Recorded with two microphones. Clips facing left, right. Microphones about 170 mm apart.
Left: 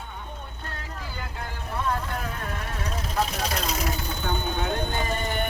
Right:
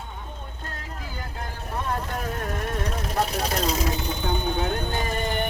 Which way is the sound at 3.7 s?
20° right (ahead or behind).